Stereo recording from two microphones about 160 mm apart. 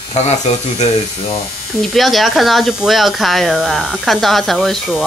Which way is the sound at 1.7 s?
Centre (ahead or behind).